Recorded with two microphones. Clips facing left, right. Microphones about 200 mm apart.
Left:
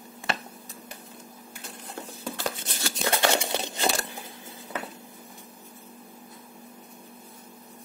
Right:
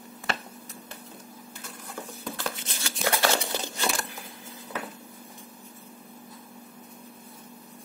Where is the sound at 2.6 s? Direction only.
45° left (ahead or behind).